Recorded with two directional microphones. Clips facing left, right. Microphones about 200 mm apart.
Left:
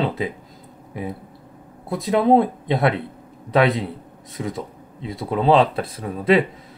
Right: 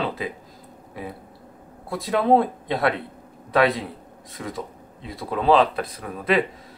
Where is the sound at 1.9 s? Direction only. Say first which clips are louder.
Left 3 dB; 20° left (ahead or behind).